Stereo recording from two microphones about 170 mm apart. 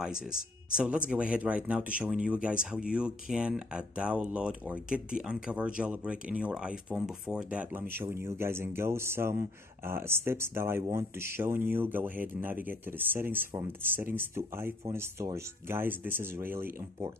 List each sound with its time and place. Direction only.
0.1 s speech: 60° left (ahead or behind)
0.7 s a man's voice: 5° right (ahead or behind)